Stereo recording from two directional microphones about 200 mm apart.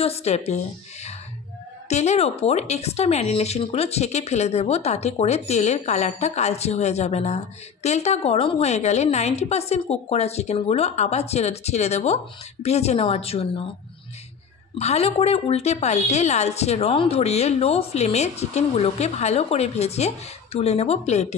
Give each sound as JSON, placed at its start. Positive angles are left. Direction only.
{"t": 0.0, "sound": "a woman's voice", "side_deg": 30}
{"t": 14.8, "sound": "speech", "side_deg": 30}